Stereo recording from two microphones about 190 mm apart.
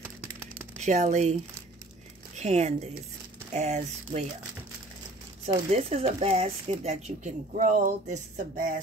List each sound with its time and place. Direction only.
0.0 s typing: 10° right (ahead or behind)
0.7 s speech: 35° right (ahead or behind)
5.7 s speech: 30° right (ahead or behind)